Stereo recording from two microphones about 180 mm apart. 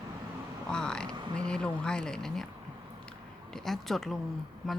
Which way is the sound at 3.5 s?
Centre (ahead or behind).